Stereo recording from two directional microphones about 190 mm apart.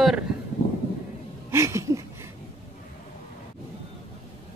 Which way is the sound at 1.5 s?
15° right (ahead or behind).